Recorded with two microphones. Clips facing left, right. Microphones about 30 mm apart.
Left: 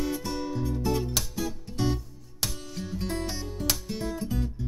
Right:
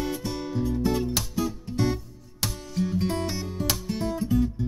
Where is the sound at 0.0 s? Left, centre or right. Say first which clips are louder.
Even; centre.